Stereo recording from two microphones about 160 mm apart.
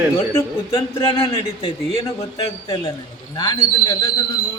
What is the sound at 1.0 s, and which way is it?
Speech, 35° left (ahead or behind).